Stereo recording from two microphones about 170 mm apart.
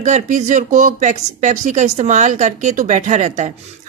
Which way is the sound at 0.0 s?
45° right (ahead or behind).